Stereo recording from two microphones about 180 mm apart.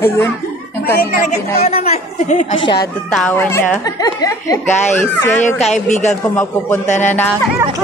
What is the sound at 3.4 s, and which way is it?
Speech, 15° left (ahead or behind).